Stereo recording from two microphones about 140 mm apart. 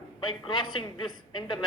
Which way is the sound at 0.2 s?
35° left (ahead or behind).